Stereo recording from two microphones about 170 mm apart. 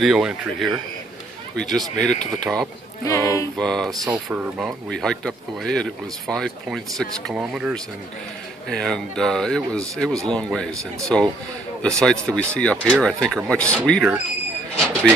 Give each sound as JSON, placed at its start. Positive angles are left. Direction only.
{"t": 0.0, "sound": "speech", "side_deg": -5}
{"t": 3.1, "sound": "speech", "side_deg": 15}
{"t": 3.5, "sound": "speech", "side_deg": 5}